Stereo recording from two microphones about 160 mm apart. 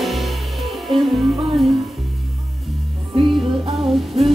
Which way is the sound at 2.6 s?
Centre (ahead or behind).